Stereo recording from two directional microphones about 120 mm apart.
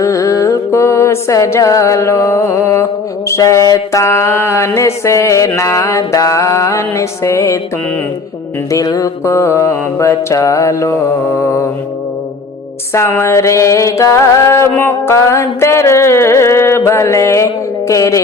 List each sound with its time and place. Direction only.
0.0 s music: 25° left (ahead or behind)
8.7 s music: 30° left (ahead or behind)
12.9 s music: 20° left (ahead or behind)